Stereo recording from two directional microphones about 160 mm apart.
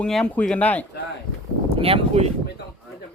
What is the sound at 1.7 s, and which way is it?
Speech, 35° right (ahead or behind).